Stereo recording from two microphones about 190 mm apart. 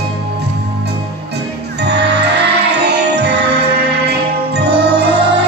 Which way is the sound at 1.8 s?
60° right (ahead or behind).